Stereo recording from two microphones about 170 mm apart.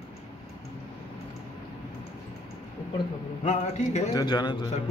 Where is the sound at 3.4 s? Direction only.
40° left (ahead or behind).